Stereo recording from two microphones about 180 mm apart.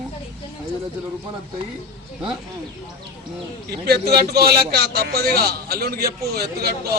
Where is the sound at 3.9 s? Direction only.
60° right (ahead or behind).